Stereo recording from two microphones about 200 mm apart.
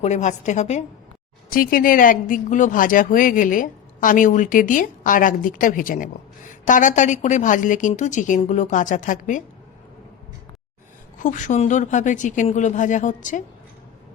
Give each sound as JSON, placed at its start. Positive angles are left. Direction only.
{"t": 0.0, "sound": "speech", "side_deg": 35}
{"t": 1.5, "sound": "a woman's voice", "side_deg": 45}
{"t": 11.2, "sound": "speech", "side_deg": 40}